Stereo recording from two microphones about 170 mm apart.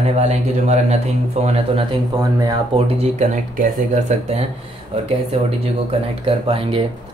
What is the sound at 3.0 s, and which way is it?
Speech, 45° right (ahead or behind).